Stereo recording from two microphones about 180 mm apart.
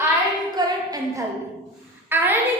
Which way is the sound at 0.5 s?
20° right (ahead or behind).